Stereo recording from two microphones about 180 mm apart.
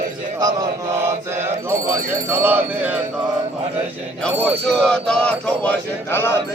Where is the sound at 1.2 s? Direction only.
15° right (ahead or behind).